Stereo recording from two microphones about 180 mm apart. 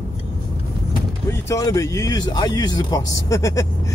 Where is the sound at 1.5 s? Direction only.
20° left (ahead or behind).